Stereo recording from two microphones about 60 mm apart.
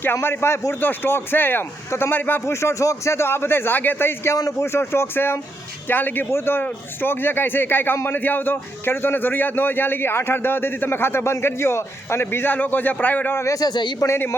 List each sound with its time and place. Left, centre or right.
0.0 s a man's voice: left
0.8 s a man's voice: left
2.4 s a man's voice: left
12.5 s a man's voice: left
13.5 s a man's voice: left